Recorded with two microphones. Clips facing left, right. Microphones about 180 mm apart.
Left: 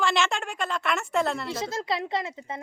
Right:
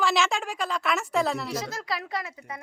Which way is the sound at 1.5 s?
25° left (ahead or behind).